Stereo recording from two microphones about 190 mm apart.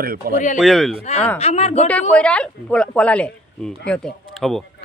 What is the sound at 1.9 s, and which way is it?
Speech, 5° left (ahead or behind).